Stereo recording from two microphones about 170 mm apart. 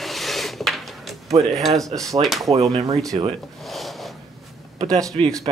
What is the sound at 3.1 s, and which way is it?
Speech, 35° right (ahead or behind).